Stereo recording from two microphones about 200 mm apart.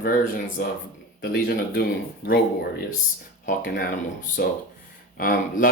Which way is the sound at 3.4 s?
45° left (ahead or behind).